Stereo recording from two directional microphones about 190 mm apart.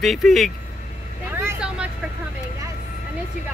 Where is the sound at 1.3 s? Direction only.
10° right (ahead or behind).